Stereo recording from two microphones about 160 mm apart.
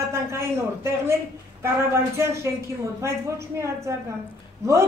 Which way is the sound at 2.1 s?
20° right (ahead or behind).